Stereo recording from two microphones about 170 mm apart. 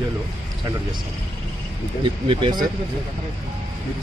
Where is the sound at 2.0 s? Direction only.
30° right (ahead or behind).